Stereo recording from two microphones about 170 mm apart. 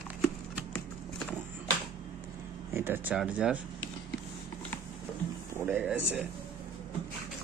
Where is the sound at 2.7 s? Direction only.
10° right (ahead or behind).